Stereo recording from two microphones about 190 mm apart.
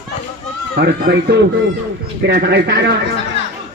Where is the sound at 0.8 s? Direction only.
60° right (ahead or behind).